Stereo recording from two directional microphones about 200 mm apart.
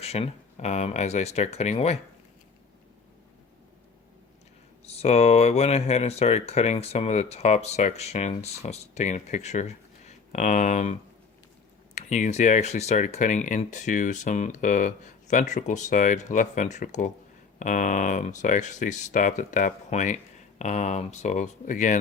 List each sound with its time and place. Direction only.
0.0 s speech: 30° left (ahead or behind)
4.9 s speech: 30° left (ahead or behind)
11.9 s speech: 35° left (ahead or behind)